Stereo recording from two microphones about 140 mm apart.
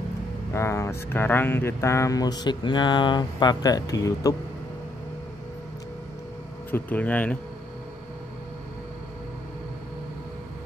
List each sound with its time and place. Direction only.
0.5 s speech: 20° left (ahead or behind)
6.7 s speech: 10° left (ahead or behind)